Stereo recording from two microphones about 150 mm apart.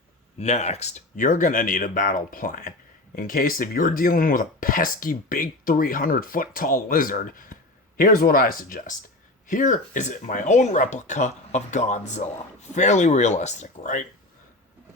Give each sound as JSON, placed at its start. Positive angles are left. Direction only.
{"t": 0.3, "sound": "speech", "side_deg": 50}